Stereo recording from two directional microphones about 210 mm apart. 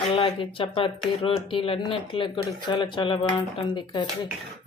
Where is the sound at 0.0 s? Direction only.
25° left (ahead or behind).